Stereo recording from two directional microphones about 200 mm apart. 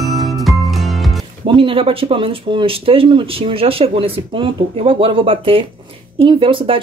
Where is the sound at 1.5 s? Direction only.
25° right (ahead or behind).